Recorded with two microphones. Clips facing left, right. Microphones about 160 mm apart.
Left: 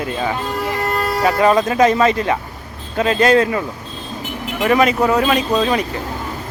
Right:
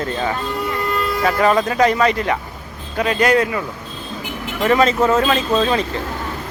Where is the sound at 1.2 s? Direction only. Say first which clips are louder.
Left 2 dB; 20° left (ahead or behind).